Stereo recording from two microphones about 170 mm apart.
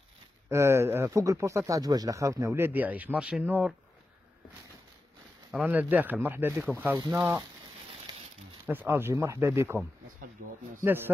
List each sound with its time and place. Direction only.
0.5 s speech: 15° right (ahead or behind)
5.5 s speech: 10° right (ahead or behind)
8.6 s speech: 10° right (ahead or behind)
10.4 s a sound: 55° right (ahead or behind)
10.8 s speech: 10° right (ahead or behind)